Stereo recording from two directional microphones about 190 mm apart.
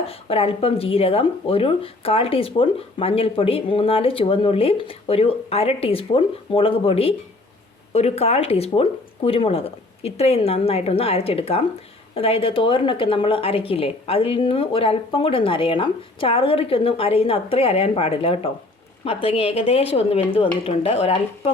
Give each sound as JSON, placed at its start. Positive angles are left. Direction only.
{"t": 0.0, "sound": "speech", "side_deg": 30}